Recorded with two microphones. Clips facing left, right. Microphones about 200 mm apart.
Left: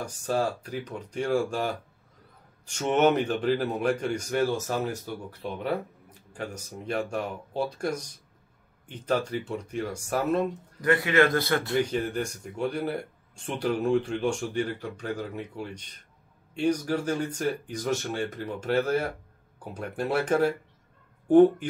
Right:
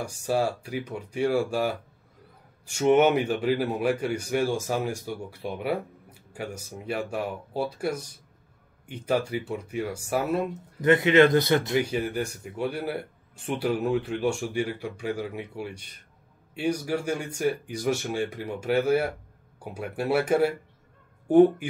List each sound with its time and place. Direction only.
0.0 s a man's voice: 10° right (ahead or behind)
10.8 s speech: 20° right (ahead or behind)
11.8 s a man's voice: 10° right (ahead or behind)